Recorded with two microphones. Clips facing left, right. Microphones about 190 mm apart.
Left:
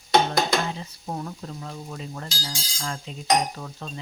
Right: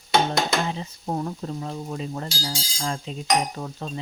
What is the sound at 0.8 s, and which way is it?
Speech, 30° right (ahead or behind).